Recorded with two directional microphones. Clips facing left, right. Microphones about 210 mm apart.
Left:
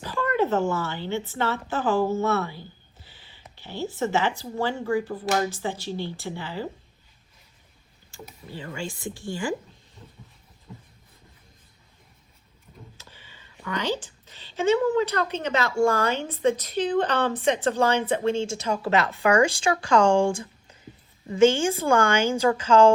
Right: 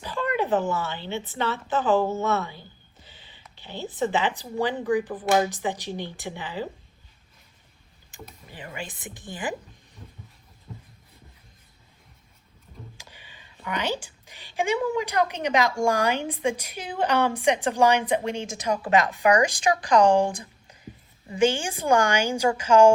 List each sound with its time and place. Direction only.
0.0 s a sound: 15° right (ahead or behind)
0.7 s speech: 15° right (ahead or behind)
3.0 s a sound: 20° right (ahead or behind)
4.4 s speech: 15° right (ahead or behind)
8.2 s speech: 5° left (ahead or behind)
8.5 s speech: 15° right (ahead or behind)
13.0 s speech: 15° right (ahead or behind)